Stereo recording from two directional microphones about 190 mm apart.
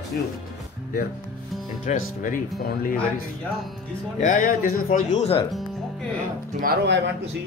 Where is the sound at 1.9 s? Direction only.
40° left (ahead or behind).